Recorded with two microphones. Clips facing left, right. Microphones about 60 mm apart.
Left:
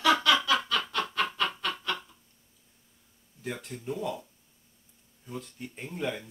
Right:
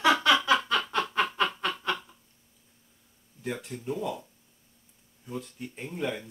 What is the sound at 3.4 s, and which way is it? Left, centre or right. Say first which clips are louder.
Speech: right 2 dB; centre.